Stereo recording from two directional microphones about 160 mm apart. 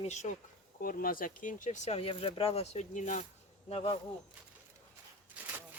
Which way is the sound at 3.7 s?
35° left (ahead or behind).